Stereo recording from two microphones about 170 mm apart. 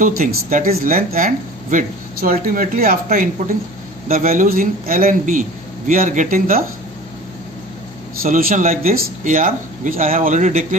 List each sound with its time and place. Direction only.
0.0 s a man's voice: 50° right (ahead or behind)
8.2 s a man's voice: 60° right (ahead or behind)